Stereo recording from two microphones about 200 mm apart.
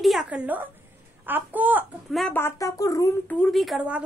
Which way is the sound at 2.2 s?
10° left (ahead or behind).